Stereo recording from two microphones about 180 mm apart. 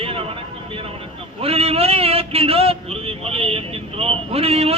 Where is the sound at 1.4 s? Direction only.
35° right (ahead or behind).